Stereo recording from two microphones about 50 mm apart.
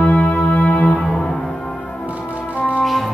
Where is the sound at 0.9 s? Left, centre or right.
Centre.